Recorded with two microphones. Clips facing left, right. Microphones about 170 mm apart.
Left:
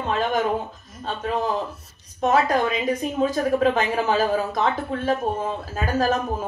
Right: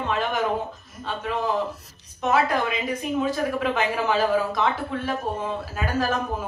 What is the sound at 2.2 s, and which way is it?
A woman's voice, 50° left (ahead or behind).